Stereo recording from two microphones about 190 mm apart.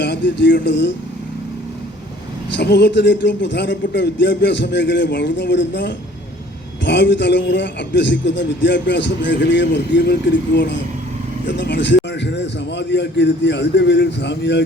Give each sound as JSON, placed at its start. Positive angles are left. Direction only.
{"t": 0.0, "sound": "a man's voice", "side_deg": 65}
{"t": 2.6, "sound": "a man's voice", "side_deg": 65}